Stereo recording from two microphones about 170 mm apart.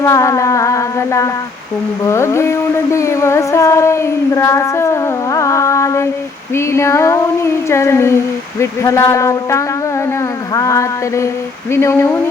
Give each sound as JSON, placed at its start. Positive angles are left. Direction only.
{"t": 0.0, "sound": "music", "side_deg": 20}
{"t": 2.0, "sound": "a sound", "side_deg": 15}
{"t": 6.5, "sound": "female singing", "side_deg": 15}